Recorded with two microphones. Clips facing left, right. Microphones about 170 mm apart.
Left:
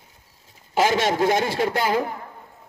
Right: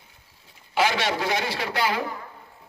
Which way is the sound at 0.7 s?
45° left (ahead or behind).